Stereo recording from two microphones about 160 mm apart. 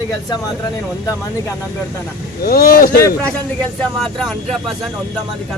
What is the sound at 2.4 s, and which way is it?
Speech, 75° left (ahead or behind).